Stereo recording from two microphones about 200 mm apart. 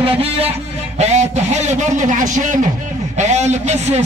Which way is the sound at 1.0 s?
35° right (ahead or behind).